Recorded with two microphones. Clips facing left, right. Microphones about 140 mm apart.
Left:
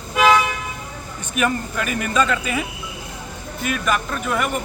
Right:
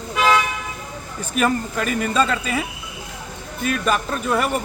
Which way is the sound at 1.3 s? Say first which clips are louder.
Right 1 dB; 35° right (ahead or behind).